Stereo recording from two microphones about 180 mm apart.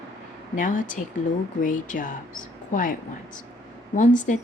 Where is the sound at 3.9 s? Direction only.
45° left (ahead or behind).